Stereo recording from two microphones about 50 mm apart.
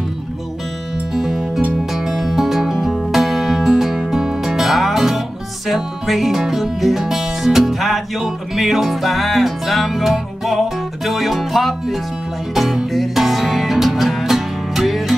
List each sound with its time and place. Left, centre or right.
1.1 s music: centre